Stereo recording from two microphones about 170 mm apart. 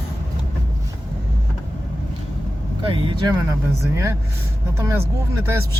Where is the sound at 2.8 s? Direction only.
25° right (ahead or behind).